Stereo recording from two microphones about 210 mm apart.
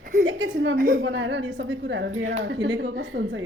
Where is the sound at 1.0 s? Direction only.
60° right (ahead or behind).